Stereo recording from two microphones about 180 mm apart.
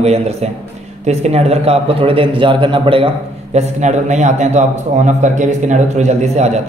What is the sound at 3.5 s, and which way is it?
A man's voice, 40° right (ahead or behind).